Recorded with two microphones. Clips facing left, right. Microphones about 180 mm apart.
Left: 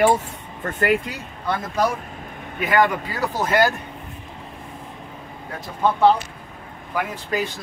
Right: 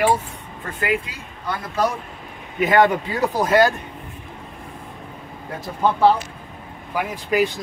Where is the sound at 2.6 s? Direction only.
20° right (ahead or behind).